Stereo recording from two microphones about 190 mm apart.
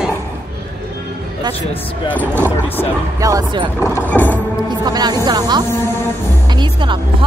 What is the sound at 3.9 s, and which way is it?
Music, 10° left (ahead or behind).